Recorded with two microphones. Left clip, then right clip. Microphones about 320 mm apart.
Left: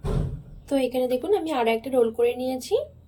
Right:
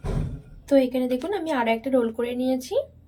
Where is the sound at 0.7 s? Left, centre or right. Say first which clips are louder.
Right 2 dB; centre.